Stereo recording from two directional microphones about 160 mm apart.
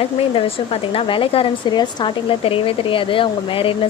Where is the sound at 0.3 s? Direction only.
35° left (ahead or behind).